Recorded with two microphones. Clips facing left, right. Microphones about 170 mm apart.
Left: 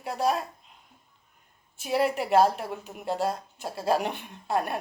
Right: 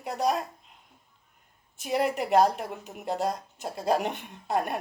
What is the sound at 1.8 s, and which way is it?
Speech, 5° left (ahead or behind).